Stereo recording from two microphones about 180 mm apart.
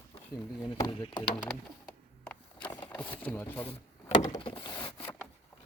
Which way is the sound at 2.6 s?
25° left (ahead or behind).